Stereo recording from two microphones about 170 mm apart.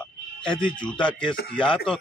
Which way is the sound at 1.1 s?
30° left (ahead or behind).